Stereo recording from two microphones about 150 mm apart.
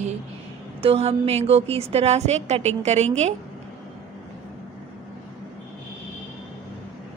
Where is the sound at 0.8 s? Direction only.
40° right (ahead or behind).